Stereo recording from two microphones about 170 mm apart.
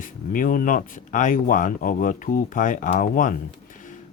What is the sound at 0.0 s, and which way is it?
Speech, 55° left (ahead or behind).